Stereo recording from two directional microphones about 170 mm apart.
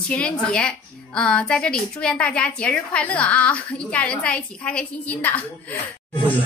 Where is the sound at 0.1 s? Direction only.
5° left (ahead or behind).